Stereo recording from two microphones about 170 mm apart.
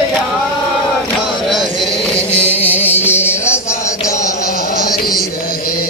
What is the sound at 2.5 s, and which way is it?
Music, 35° left (ahead or behind).